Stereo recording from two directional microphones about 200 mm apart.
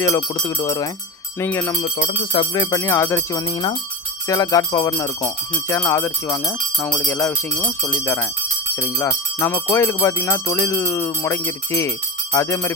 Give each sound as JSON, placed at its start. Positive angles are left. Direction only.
{"t": 0.2, "sound": "speech", "side_deg": 20}
{"t": 2.3, "sound": "speech", "side_deg": 25}